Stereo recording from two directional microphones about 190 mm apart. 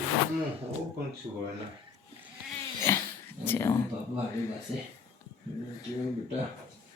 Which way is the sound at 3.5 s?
15° left (ahead or behind).